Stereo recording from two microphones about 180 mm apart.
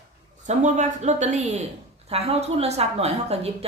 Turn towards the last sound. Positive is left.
turn(degrees=-35)  # may be behind; listen again after turning